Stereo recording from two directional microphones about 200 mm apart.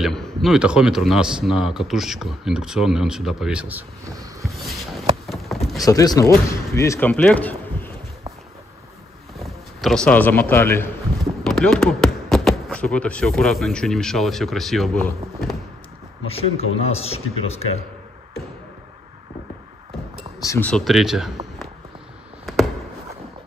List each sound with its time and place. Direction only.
0.0 s a man's voice: centre (ahead or behind)
4.4 s boat: centre (ahead or behind)
5.2 s a sound: centre (ahead or behind)
5.9 s speech: 15° left (ahead or behind)
9.4 s speech: centre (ahead or behind)
16.3 s a man's voice: 30° left (ahead or behind)
20.4 s a man's voice: 10° left (ahead or behind)